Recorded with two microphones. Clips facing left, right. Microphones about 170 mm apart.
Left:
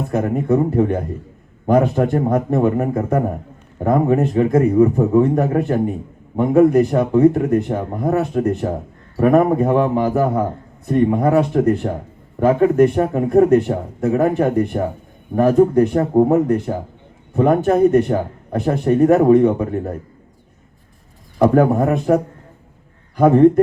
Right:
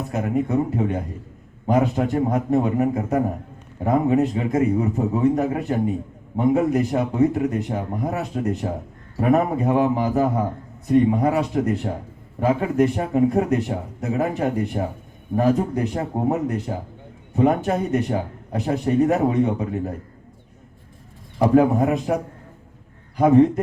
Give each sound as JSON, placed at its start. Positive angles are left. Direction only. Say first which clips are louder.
{"t": 0.1, "sound": "a man's voice", "louder": "left 5 dB", "side_deg": 55}
{"t": 21.4, "sound": "a man's voice", "louder": "left 3 dB", "side_deg": 55}